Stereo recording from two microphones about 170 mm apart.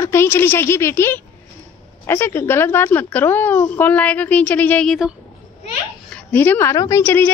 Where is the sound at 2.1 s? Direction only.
15° left (ahead or behind).